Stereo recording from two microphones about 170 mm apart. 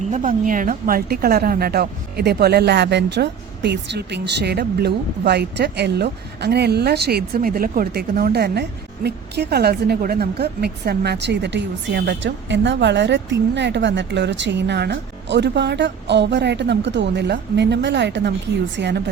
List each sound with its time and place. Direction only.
0.1 s a woman's voice: 50° right (ahead or behind); by 19.0 s 90° right